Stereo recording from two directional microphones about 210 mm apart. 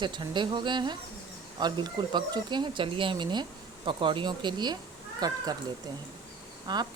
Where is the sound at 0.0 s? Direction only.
20° right (ahead or behind).